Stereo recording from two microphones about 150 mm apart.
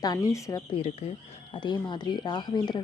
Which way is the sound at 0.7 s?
40° left (ahead or behind).